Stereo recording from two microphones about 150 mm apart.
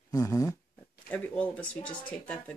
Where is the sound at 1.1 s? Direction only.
10° left (ahead or behind).